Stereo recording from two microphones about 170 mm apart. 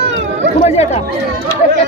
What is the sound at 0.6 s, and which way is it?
Speech, 40° left (ahead or behind).